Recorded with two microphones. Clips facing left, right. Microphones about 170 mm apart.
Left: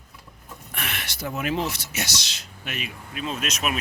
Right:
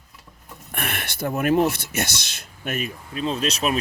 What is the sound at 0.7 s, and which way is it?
Speech, 55° right (ahead or behind).